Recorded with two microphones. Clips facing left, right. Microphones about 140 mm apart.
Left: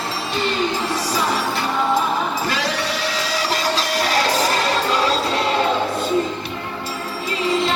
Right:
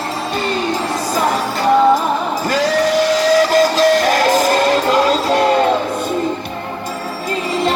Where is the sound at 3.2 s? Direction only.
45° right (ahead or behind).